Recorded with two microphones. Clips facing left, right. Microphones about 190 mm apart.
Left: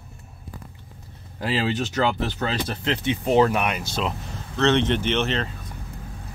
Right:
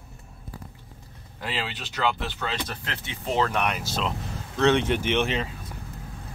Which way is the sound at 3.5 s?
Centre (ahead or behind).